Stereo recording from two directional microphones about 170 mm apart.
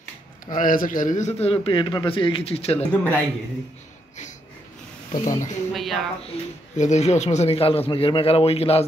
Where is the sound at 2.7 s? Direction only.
10° left (ahead or behind).